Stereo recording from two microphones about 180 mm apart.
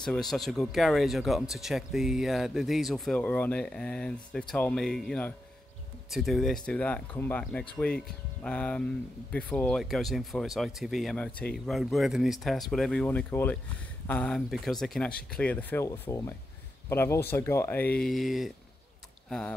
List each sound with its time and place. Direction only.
0.0 s speech: centre (ahead or behind)